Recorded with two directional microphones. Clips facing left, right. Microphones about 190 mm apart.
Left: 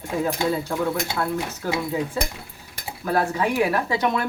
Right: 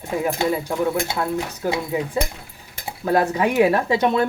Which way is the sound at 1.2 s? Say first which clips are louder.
Right 2 dB; 15° right (ahead or behind).